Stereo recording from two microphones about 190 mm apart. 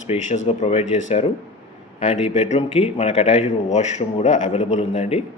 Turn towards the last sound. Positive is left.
turn(degrees=35)  # may be behind; listen again after turning